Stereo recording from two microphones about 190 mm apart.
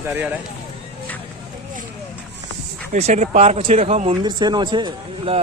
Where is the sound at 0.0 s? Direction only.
10° right (ahead or behind).